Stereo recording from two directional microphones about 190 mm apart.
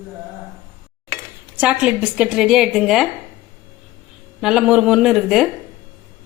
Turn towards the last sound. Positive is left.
turn(degrees=0)  # may be behind; listen again after turning